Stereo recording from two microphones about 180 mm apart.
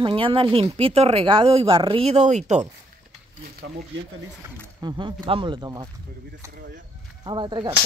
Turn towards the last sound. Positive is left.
turn(degrees=-25)  # may be behind; listen again after turning